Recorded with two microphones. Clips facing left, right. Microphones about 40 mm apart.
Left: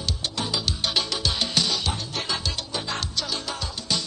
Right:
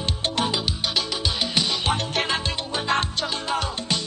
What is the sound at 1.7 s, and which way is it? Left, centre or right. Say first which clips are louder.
Music: right 4 dB; right.